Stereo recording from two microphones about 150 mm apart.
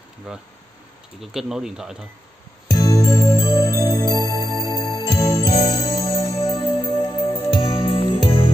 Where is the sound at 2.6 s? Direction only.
25° left (ahead or behind).